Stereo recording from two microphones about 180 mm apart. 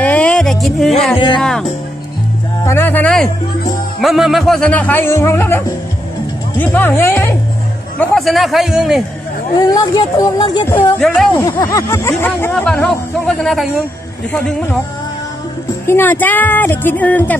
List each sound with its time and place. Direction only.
0.0 s music: 5° left (ahead or behind)
1.1 s speech: 25° left (ahead or behind)
1.4 s speech: 5° left (ahead or behind)
6.6 s speech: 10° left (ahead or behind)
8.0 s speech: centre (ahead or behind)
9.6 s speech: 20° left (ahead or behind)
10.7 s speech: 5° left (ahead or behind)
11.3 s speech: 20° left (ahead or behind); by 13.7 s centre (ahead or behind)
15.9 s speech: 10° left (ahead or behind)